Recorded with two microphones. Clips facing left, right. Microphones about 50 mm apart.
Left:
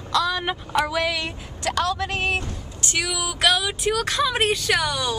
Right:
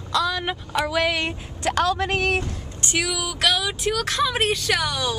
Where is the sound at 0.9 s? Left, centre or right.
Right.